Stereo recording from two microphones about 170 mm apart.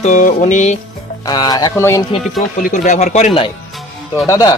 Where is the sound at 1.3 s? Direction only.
25° left (ahead or behind).